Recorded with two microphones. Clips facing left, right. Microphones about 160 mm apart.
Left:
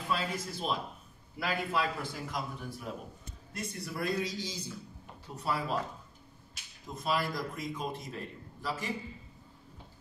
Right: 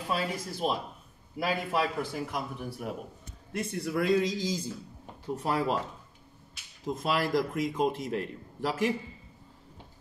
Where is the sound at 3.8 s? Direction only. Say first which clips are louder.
Right 8 dB; 80° right.